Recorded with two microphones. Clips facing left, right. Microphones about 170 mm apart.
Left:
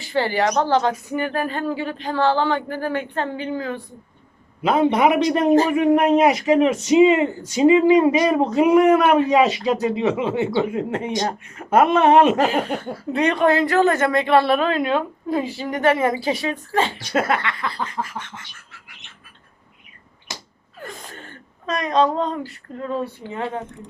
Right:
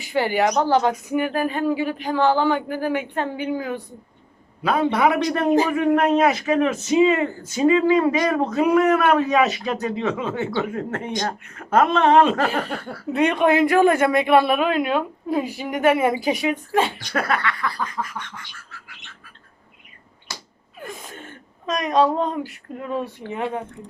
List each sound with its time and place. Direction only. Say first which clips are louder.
0.0 s a woman's voice: even; 15° right (ahead or behind)
4.6 s speech: left 2 dB; 20° left (ahead or behind)
6.6 s a sound: left 3 dB; 20° left (ahead or behind)
7.5 s speech: left 3 dB; 15° left (ahead or behind)
8.5 s a sound: left 3 dB; 20° left (ahead or behind)
9.3 s speech: left 3 dB; 30° left (ahead or behind)
9.6 s speech: left 4 dB; 15° left (ahead or behind)
12.7 s a sound: left 4 dB; 20° left (ahead or behind)
13.1 s a woman's voice: even; 5° right (ahead or behind)
17.0 s a sound: left 2 dB; 20° left (ahead or behind)
20.8 s gasp: right 1 dB; 5° right (ahead or behind)
21.7 s a woman's voice: even; 10° right (ahead or behind)